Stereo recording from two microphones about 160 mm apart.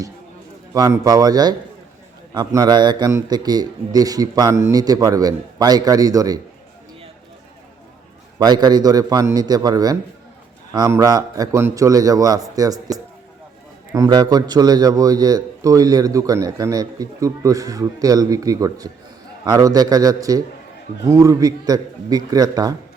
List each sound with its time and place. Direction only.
0.7 s a man's voice: 20° right (ahead or behind)
8.4 s a man's voice: 25° right (ahead or behind)